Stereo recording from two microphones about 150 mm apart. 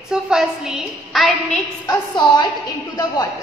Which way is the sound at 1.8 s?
30° left (ahead or behind).